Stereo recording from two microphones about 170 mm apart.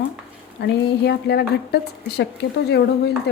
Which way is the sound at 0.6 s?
80° left.